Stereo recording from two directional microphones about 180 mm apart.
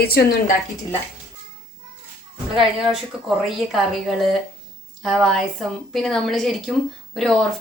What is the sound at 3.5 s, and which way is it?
A woman's voice, centre (ahead or behind).